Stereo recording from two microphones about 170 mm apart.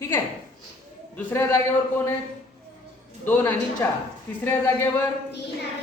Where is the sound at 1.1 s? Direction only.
15° left (ahead or behind).